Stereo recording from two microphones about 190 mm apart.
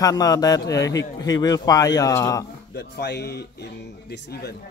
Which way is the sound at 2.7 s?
60° left (ahead or behind).